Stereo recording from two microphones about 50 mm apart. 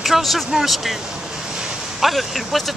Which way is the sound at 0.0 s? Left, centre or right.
Centre.